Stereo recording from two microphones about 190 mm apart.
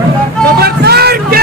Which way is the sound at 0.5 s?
55° right (ahead or behind).